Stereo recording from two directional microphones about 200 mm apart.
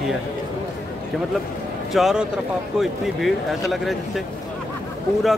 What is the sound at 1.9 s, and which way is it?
Speech, centre (ahead or behind).